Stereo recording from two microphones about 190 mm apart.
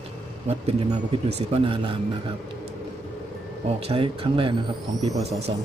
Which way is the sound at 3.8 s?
30° right (ahead or behind).